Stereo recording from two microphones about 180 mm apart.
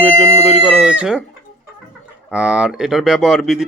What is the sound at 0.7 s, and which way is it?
Speech, 5° right (ahead or behind).